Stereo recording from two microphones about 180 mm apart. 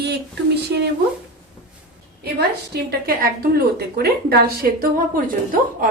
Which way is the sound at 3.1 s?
55° right (ahead or behind).